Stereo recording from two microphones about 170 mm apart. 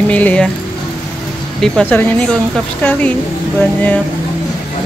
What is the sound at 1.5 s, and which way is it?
Speech, 5° left (ahead or behind).